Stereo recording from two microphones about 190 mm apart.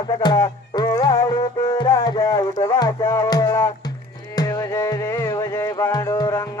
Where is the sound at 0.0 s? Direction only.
20° left (ahead or behind).